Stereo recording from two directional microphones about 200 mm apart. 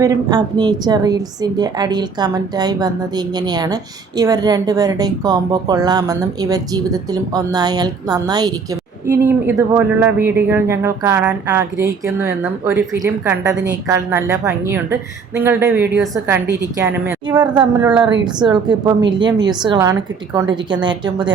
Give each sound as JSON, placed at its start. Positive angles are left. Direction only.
{"t": 0.0, "sound": "a woman's voice", "side_deg": -20}